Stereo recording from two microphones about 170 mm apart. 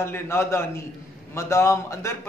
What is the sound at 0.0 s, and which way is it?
A man's voice, 15° left (ahead or behind).